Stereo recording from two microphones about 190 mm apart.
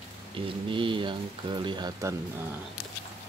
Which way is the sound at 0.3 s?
25° right (ahead or behind).